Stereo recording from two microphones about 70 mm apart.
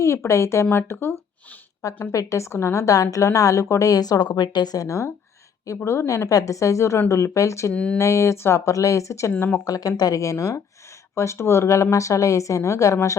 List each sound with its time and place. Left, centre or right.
0.0 s speech: left
2.1 s a woman's voice: left
7.7 s speech: centre
7.9 s a woman's voice: left
9.6 s a woman's voice: left